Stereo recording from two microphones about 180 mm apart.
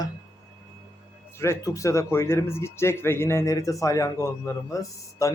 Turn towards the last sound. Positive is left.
turn(degrees=20)  # may be behind; listen again after turning